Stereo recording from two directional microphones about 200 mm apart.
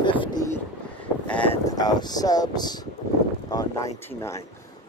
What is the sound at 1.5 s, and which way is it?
Speech, 20° left (ahead or behind).